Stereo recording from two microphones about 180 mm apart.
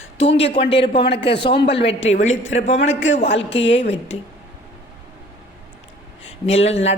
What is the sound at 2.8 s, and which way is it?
Speech, 90° left.